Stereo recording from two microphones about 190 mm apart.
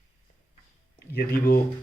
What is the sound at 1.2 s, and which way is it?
Speech, 55° left (ahead or behind).